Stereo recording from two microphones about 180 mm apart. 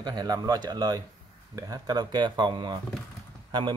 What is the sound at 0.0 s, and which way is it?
A man's voice, 20° right (ahead or behind).